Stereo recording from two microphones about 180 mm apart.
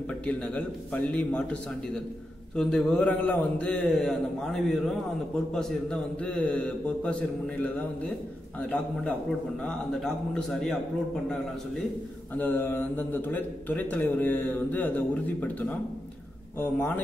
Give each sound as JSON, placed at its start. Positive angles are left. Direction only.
{"t": 0.3, "sound": "a man's voice", "side_deg": 5}
{"t": 9.7, "sound": "a man's voice", "side_deg": 5}
{"t": 12.4, "sound": "a man's voice", "side_deg": 10}
{"t": 16.5, "sound": "a man's voice", "side_deg": 10}